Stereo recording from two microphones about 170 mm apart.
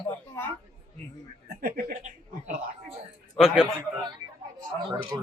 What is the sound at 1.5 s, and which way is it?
Chuckle, 55° right (ahead or behind).